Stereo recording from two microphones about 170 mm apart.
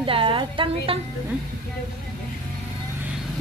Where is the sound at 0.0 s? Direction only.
30° right (ahead or behind).